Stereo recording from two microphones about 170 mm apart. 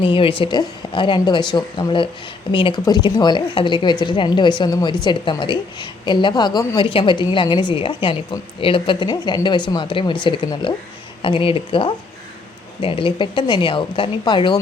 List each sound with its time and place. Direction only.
0.0 s a woman's voice: 30° left (ahead or behind)